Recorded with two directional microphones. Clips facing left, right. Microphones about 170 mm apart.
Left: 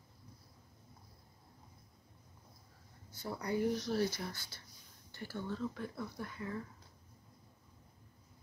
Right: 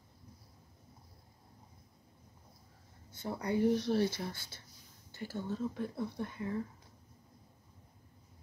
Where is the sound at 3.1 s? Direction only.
25° right (ahead or behind).